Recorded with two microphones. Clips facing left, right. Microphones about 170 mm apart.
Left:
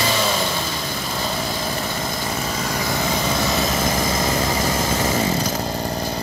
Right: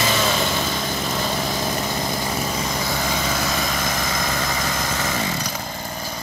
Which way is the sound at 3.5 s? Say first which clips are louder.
Left 4 dB; 25° left (ahead or behind).